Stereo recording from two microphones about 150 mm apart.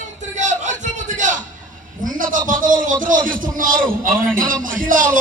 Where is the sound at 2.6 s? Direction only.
60° right (ahead or behind).